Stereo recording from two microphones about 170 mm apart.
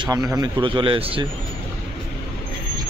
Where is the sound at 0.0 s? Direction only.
20° right (ahead or behind).